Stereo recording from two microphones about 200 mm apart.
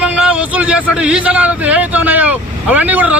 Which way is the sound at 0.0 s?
5° right (ahead or behind).